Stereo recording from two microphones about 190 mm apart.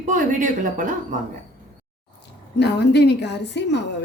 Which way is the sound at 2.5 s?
60° left (ahead or behind).